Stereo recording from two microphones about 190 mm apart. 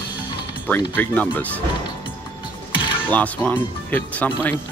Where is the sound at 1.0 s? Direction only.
10° left (ahead or behind).